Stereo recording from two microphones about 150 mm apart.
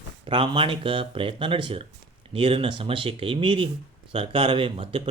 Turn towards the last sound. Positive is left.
turn(degrees=-35)  # may be behind; listen again after turning